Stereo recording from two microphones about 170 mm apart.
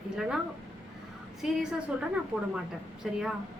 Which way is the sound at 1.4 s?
5° right (ahead or behind).